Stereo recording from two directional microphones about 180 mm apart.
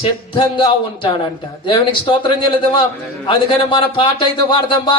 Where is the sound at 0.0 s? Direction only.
25° left (ahead or behind).